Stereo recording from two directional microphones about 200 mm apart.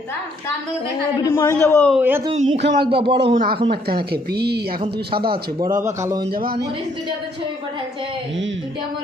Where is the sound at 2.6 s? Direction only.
60° right (ahead or behind).